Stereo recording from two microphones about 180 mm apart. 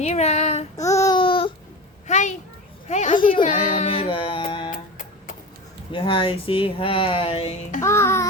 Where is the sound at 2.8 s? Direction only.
40° left (ahead or behind).